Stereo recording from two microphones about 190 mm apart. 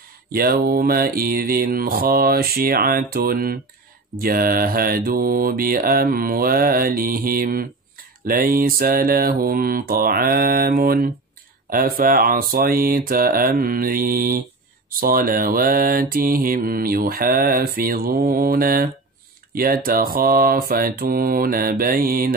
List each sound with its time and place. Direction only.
0.3 s mantra: 50° right (ahead or behind)